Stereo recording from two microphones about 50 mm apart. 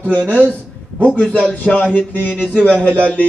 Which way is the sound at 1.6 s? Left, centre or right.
Left.